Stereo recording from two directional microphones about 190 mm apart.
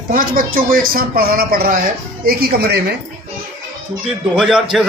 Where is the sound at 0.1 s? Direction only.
45° right (ahead or behind).